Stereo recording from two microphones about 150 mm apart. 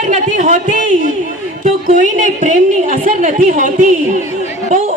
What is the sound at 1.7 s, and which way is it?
A woman's voice, 60° right (ahead or behind).